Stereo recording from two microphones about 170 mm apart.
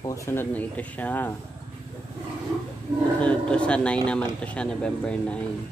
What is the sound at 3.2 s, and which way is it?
Speech, 5° left (ahead or behind).